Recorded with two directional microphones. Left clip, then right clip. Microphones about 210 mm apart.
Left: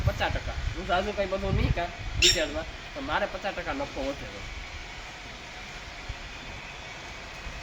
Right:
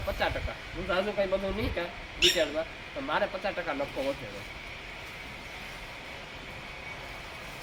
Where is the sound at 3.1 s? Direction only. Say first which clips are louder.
Even; centre (ahead or behind).